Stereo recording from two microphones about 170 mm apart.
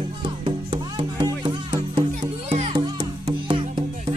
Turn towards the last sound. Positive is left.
turn(degrees=-30)  # may be behind; listen again after turning